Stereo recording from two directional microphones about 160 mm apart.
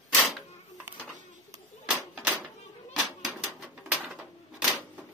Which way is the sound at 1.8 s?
10° right (ahead or behind).